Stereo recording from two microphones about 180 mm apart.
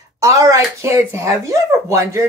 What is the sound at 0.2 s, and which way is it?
Speech, 20° right (ahead or behind).